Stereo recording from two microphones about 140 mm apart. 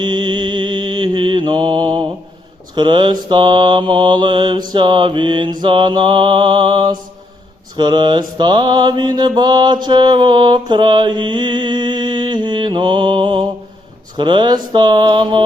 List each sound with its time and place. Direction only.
0.0 s mantra: 30° right (ahead or behind)